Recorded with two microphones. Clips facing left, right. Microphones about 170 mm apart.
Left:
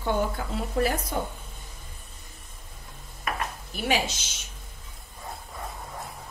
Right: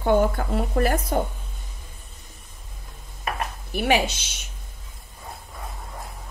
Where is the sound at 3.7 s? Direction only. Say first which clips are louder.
Right 6 dB; 60° right (ahead or behind).